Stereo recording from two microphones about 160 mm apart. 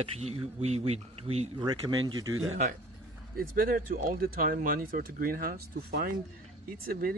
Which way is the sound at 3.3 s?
65° right (ahead or behind).